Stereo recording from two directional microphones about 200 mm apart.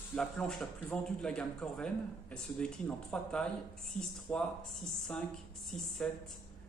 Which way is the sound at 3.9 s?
35° left (ahead or behind).